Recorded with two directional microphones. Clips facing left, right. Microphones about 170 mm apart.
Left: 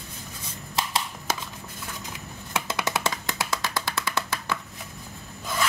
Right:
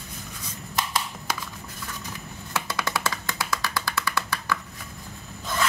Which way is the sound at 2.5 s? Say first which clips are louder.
Left 1 dB; 20° left (ahead or behind).